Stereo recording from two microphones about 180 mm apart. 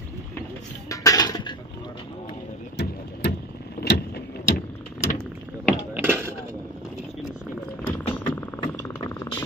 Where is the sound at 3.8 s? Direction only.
40° left (ahead or behind).